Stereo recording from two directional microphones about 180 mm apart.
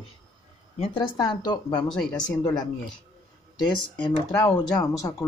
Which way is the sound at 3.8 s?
20° left (ahead or behind).